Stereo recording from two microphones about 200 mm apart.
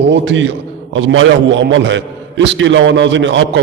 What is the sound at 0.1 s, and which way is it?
A man's voice, 65° right (ahead or behind).